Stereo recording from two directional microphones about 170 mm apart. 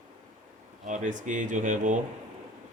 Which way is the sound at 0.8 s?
45° right (ahead or behind).